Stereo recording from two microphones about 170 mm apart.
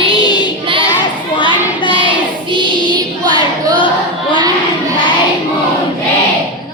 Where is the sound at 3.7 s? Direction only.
30° left (ahead or behind).